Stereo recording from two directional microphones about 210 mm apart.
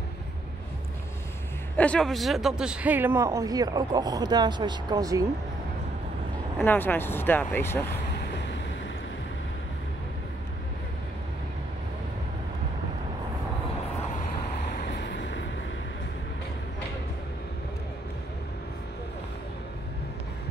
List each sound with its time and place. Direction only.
1.8 s speech: 5° left (ahead or behind); by 5.2 s 15° right (ahead or behind)
6.6 s speech: 10° left (ahead or behind)
8.2 s vehicle: 55° left (ahead or behind)
14.8 s vehicle: 50° left (ahead or behind)